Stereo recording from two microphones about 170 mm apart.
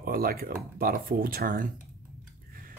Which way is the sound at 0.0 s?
60° right (ahead or behind).